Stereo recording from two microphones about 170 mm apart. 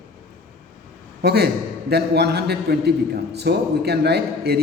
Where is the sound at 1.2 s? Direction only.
70° right (ahead or behind).